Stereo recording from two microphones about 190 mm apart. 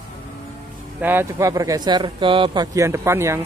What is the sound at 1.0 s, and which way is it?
Speech, 15° right (ahead or behind).